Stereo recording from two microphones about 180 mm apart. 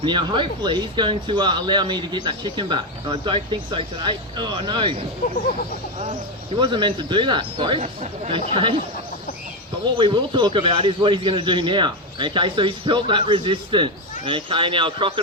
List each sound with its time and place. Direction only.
0.0 s speech: 25° right (ahead or behind)
6.6 s speech: 25° right (ahead or behind)
7.8 s speech: 35° right (ahead or behind)
10.0 s speech: 25° right (ahead or behind)